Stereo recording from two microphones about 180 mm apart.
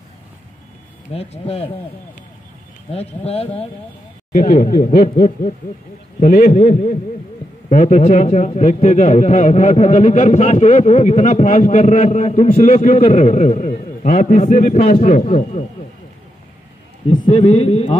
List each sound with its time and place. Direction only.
1.1 s a man's voice: 35° left (ahead or behind)
2.9 s a man's voice: 35° left (ahead or behind)
4.3 s speech: 50° left (ahead or behind)
6.7 s a man's voice: 40° left (ahead or behind)
17.5 s a man's voice: 35° left (ahead or behind)